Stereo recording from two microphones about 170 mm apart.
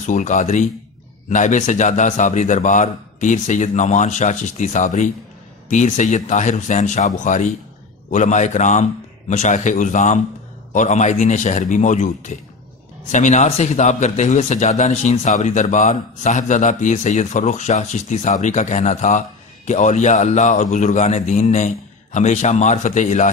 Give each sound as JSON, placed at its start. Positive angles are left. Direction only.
{"t": 0.0, "sound": "a man's voice", "side_deg": 45}